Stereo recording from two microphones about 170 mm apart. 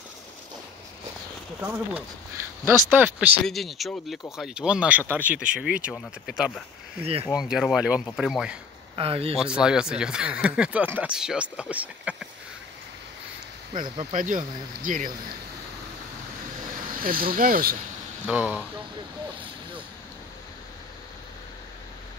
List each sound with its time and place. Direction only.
1.6 s speech: 10° right (ahead or behind)
3.4 s speech: centre (ahead or behind)
7.0 s speech: 35° right (ahead or behind)
7.2 s speech: 5° right (ahead or behind)
8.9 s speech: 35° right (ahead or behind)
9.4 s speech: 5° right (ahead or behind)
14.1 s speech: 50° right (ahead or behind)
16.9 s speech: 55° right (ahead or behind)
18.2 s speech: 10° right (ahead or behind)